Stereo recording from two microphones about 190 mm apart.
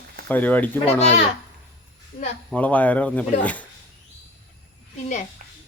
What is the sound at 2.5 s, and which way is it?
Speech, 5° left (ahead or behind).